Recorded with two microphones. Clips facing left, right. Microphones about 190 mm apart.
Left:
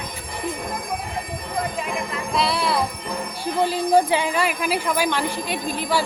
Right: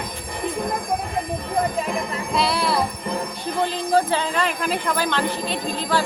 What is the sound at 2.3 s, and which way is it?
Speech, centre (ahead or behind).